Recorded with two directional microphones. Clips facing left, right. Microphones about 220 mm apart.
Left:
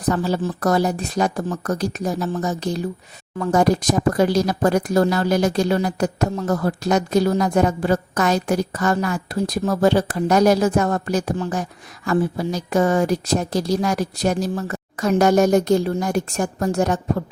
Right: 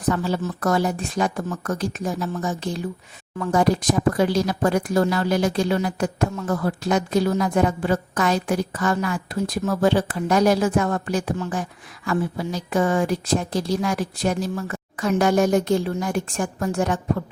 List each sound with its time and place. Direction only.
0.1 s speech: 35° left (ahead or behind)